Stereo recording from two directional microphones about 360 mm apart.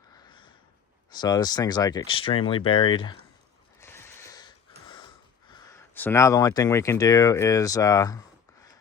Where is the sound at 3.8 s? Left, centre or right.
Centre.